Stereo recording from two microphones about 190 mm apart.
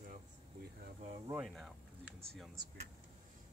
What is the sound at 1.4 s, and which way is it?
Speech, centre (ahead or behind).